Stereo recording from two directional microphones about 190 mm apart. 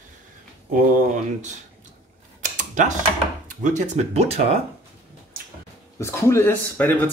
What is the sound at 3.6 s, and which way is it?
Speech, 35° right (ahead or behind).